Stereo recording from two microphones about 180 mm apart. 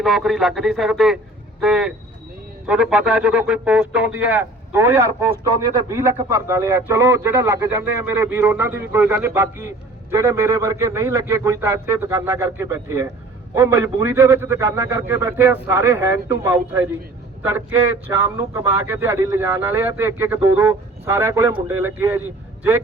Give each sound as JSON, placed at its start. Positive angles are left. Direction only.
{"t": 0.0, "sound": "speech", "side_deg": 0}